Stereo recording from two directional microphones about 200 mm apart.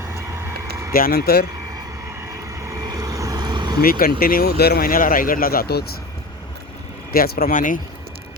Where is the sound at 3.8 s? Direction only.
45° left (ahead or behind).